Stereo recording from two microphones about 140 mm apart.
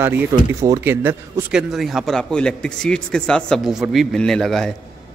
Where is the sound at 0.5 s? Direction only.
20° right (ahead or behind).